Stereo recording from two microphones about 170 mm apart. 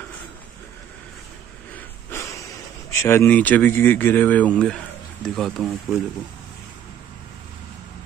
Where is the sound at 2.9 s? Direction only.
15° left (ahead or behind); by 6.0 s centre (ahead or behind).